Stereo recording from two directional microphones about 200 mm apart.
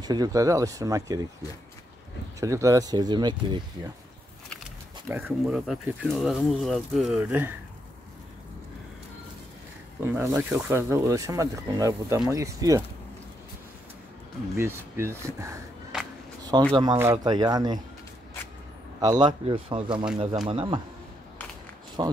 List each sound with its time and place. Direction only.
0.0 s speech: 20° right (ahead or behind)
2.4 s speech: 15° right (ahead or behind)
5.0 s speech: 5° right (ahead or behind)
9.9 s speech: 10° right (ahead or behind)
14.6 s speech: 15° right (ahead or behind)
16.7 s speech: 25° right (ahead or behind)
18.9 s speech: 20° right (ahead or behind)
22.0 s speech: 25° right (ahead or behind)